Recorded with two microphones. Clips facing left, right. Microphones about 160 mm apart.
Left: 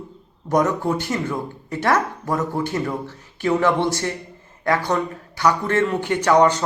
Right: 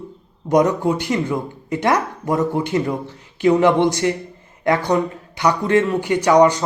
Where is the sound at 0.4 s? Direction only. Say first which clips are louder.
Right 4 dB; 15° right (ahead or behind).